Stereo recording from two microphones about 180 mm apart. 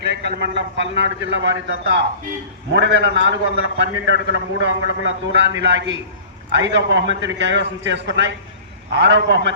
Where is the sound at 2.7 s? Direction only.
80° right.